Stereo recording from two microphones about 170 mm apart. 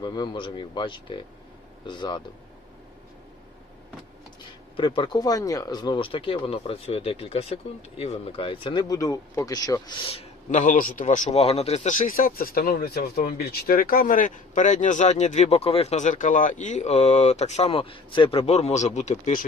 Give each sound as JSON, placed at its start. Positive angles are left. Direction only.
{"t": 0.0, "sound": "speech", "side_deg": 25}
{"t": 4.8, "sound": "speech", "side_deg": 30}
{"t": 10.5, "sound": "speech", "side_deg": 45}